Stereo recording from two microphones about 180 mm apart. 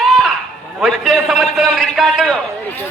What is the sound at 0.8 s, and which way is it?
A man's voice, centre (ahead or behind).